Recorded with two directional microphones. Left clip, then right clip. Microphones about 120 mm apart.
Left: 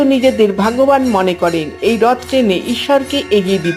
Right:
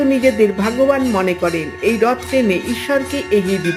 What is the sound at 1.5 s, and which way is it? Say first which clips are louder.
Speech: left 3 dB; 30° left (ahead or behind).